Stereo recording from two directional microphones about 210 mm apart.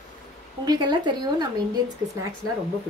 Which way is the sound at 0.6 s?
20° right (ahead or behind).